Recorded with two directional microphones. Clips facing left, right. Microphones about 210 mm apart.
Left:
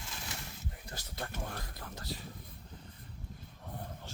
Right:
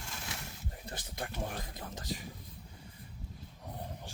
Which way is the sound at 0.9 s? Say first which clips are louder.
Right 1 dB; 15° right (ahead or behind).